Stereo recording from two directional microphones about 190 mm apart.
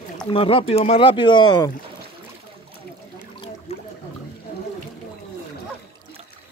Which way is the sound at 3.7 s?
35° left (ahead or behind).